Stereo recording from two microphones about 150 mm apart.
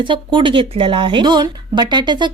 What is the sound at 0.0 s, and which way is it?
Speech, 35° right (ahead or behind).